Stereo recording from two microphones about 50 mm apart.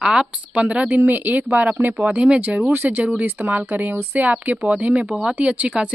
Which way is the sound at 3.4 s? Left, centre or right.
Right.